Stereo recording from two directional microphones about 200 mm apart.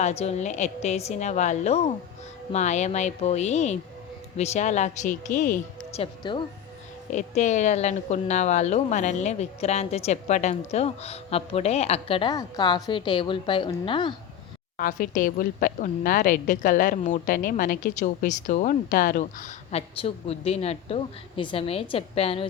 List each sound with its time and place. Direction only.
0.0 s a woman's voice: 30° left (ahead or behind)
6.0 s speech: 25° left (ahead or behind)
7.1 s a woman's voice: 35° left (ahead or behind)
14.8 s a woman's voice: 45° left (ahead or behind)